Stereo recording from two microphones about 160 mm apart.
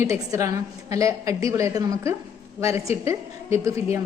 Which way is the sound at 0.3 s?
20° right (ahead or behind).